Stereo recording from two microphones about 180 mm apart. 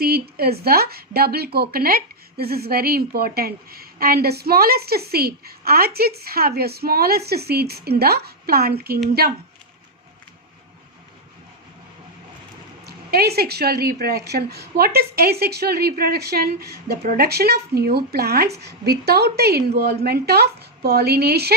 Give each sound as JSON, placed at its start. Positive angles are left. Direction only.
{"t": 0.0, "sound": "a woman's voice", "side_deg": -60}
{"t": 12.8, "sound": "a woman's voice", "side_deg": -60}